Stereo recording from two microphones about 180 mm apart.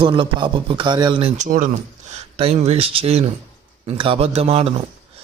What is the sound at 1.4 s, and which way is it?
Speech, 45° right (ahead or behind).